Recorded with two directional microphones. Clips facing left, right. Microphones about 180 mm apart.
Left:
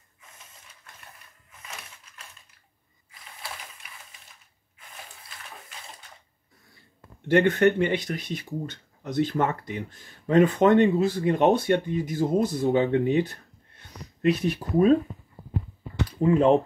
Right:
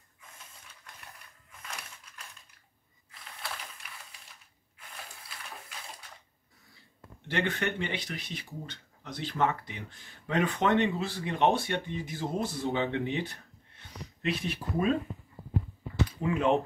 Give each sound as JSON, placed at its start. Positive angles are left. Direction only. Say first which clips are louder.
{"t": 1.6, "sound": "a sound", "louder": "left 1 dB", "side_deg": 5}
{"t": 3.1, "sound": "ratchet", "louder": "left 1 dB", "side_deg": 0}
{"t": 7.2, "sound": "speech", "louder": "left 12 dB", "side_deg": 50}
{"t": 16.2, "sound": "speech", "louder": "left 9 dB", "side_deg": 35}